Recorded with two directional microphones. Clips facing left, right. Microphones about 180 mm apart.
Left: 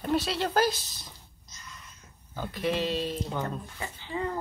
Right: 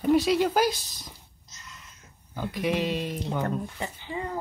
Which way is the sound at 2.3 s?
10° right (ahead or behind).